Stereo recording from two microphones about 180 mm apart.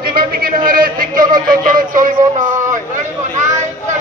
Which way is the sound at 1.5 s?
50° right (ahead or behind).